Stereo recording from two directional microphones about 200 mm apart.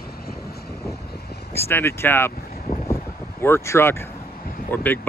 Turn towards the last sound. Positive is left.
turn(degrees=10)  # may be behind; listen again after turning